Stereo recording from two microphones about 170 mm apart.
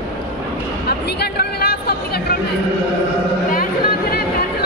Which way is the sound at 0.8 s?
70° left (ahead or behind).